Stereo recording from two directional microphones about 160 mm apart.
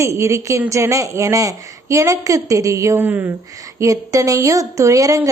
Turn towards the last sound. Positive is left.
turn(degrees=-20)  # may be behind; listen again after turning